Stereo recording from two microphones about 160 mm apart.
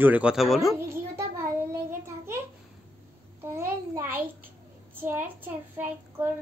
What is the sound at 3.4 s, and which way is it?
A child's voice, 15° right (ahead or behind).